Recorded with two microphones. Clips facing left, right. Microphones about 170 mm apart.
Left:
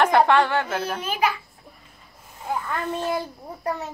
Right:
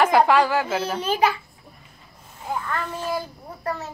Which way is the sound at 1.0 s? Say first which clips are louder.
Right 4 dB; 30° right (ahead or behind).